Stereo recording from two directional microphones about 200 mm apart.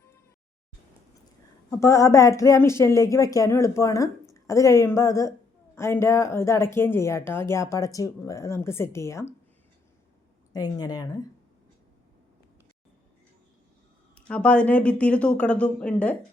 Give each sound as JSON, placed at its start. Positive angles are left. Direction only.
{"t": 1.8, "sound": "speech", "side_deg": 15}
{"t": 10.5, "sound": "speech", "side_deg": 20}
{"t": 14.3, "sound": "speech", "side_deg": 5}